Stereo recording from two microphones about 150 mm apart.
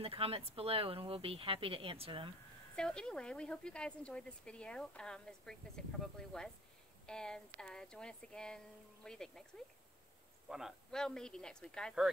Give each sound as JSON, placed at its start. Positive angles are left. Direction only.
{"t": 0.0, "sound": "speech", "side_deg": -40}
{"t": 2.7, "sound": "speech", "side_deg": 5}
{"t": 10.5, "sound": "speech", "side_deg": 0}